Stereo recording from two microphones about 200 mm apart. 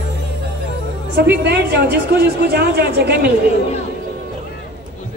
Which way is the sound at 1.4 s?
55° right (ahead or behind).